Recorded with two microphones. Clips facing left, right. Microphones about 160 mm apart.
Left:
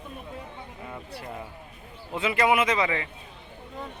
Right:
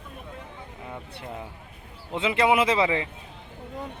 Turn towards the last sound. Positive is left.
turn(degrees=-25)  # may be behind; listen again after turning